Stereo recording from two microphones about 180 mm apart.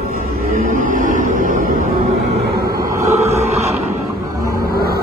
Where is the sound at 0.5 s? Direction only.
50° right (ahead or behind).